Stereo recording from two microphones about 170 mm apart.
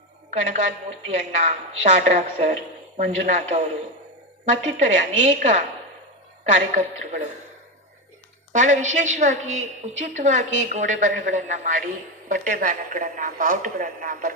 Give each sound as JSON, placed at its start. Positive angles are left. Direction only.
{"t": 0.4, "sound": "a woman's voice", "side_deg": -45}
{"t": 8.5, "sound": "a woman's voice", "side_deg": -45}